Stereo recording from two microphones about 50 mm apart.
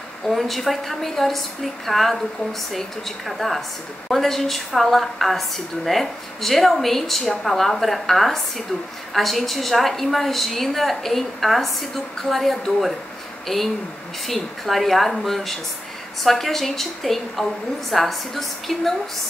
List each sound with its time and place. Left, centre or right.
0.3 s speech: centre